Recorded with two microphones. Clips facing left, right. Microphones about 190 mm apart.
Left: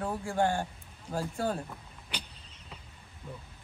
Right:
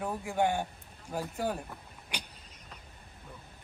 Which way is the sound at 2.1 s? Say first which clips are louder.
Even; 15° right (ahead or behind).